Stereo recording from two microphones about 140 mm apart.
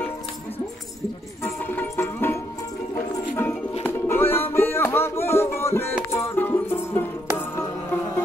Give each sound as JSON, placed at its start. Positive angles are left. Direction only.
{"t": 1.4, "sound": "music", "side_deg": 15}